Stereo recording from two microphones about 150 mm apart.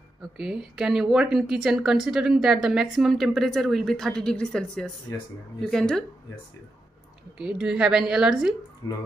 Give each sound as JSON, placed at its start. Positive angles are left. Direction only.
{"t": 0.2, "sound": "a woman's voice", "side_deg": -5}
{"t": 7.3, "sound": "a woman's voice", "side_deg": -5}
{"t": 8.8, "sound": "speech", "side_deg": 25}